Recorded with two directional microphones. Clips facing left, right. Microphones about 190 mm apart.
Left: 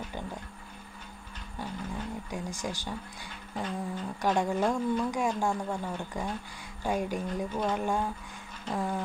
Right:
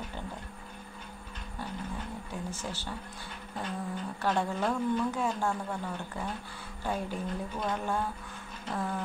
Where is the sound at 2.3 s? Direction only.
15° left (ahead or behind).